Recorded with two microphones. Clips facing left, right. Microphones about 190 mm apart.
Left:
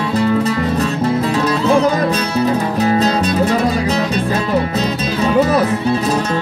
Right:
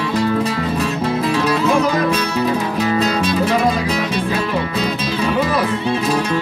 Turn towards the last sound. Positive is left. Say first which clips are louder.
# left 3 dB
turn(degrees=40)  # may be behind; listen again after turning